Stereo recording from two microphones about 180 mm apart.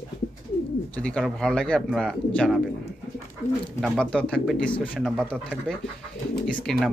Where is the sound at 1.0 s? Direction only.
5° left (ahead or behind).